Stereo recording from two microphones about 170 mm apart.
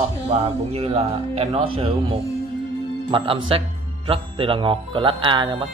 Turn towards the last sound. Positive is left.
turn(degrees=-30)  # may be behind; listen again after turning